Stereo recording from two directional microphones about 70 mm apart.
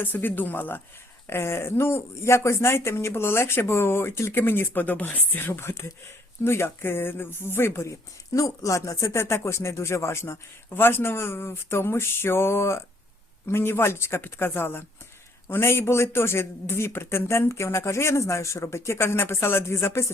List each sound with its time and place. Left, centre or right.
0.0 s speech: left